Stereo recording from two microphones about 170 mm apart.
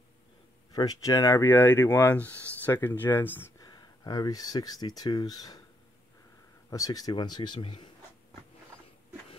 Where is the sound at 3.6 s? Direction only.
25° left (ahead or behind).